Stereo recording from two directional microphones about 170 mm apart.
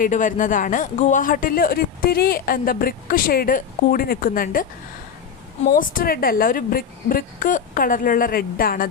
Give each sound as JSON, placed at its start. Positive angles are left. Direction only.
{"t": 0.0, "sound": "speech", "side_deg": 50}
{"t": 5.7, "sound": "speech", "side_deg": 55}